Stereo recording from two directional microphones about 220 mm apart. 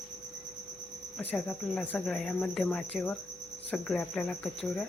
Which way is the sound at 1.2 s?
5° left (ahead or behind).